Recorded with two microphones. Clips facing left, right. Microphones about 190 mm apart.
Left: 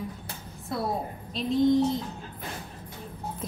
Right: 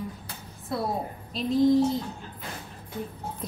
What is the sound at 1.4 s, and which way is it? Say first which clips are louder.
Speech: right 1 dB; centre (ahead or behind).